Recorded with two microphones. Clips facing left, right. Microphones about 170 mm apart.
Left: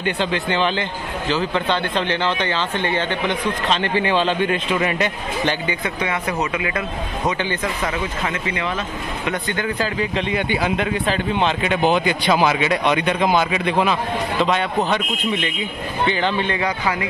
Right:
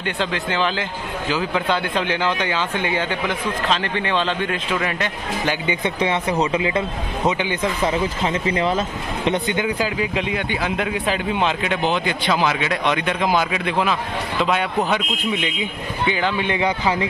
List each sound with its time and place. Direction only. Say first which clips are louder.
0.0 s speech: left 2 dB; centre (ahead or behind)
5.7 s speech: right 3 dB; 25° right (ahead or behind)
7.2 s speech: right 2 dB; 15° right (ahead or behind)
7.8 s speech: right 3 dB; 30° right (ahead or behind); by 10.4 s 10° right (ahead or behind)
10.5 s speech: left 4 dB; 5° left (ahead or behind)
10.9 s speech: left 1 dB; 5° right (ahead or behind)
12.1 s speech: left 3 dB; 10° left (ahead or behind); by 17.1 s 20° right (ahead or behind)